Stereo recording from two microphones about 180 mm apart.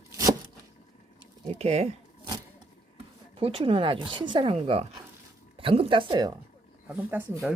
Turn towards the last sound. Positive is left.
turn(degrees=-15)  # may be behind; listen again after turning